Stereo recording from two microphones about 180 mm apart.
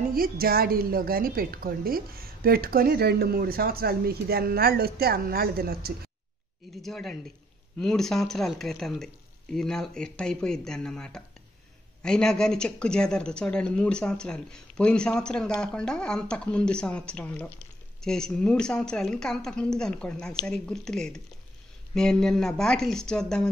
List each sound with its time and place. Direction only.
0.1 s a woman's voice: 55° right (ahead or behind)
6.8 s speech: centre (ahead or behind)